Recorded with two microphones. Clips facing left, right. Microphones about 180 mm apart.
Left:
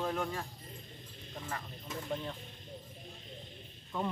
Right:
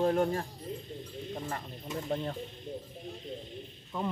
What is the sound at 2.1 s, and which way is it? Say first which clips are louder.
Speech: right 5 dB; 45° right (ahead or behind).